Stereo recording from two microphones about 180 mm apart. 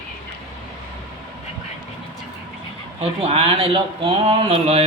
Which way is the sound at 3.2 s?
35° right (ahead or behind).